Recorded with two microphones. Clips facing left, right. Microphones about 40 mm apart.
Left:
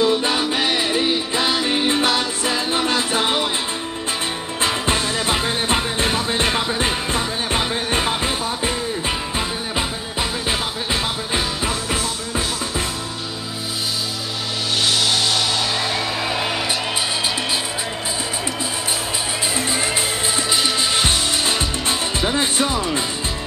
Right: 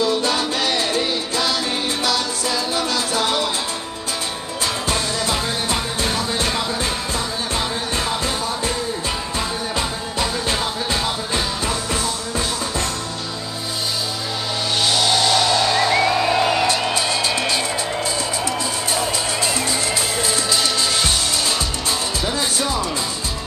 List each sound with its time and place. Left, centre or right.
0.0 s music: left
4.6 s music: left
9.8 s music: centre
14.9 s music: centre
19.5 s music: left